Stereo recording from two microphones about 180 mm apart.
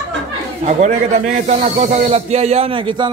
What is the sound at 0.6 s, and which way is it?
A man's voice, 40° right (ahead or behind).